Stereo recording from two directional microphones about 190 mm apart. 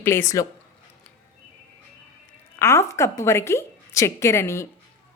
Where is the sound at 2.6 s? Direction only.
15° left (ahead or behind).